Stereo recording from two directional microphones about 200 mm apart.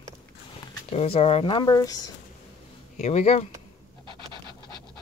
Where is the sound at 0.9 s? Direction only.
30° left (ahead or behind).